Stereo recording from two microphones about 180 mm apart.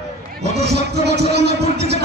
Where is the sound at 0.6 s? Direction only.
70° right (ahead or behind).